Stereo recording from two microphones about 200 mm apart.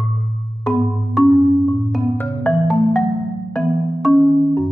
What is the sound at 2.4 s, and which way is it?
Music, 5° left (ahead or behind).